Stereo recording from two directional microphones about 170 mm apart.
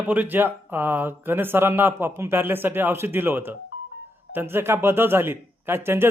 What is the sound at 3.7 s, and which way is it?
Music, 90° left.